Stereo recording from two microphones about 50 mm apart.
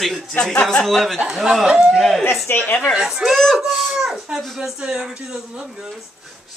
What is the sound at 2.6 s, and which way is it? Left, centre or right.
Speech, left.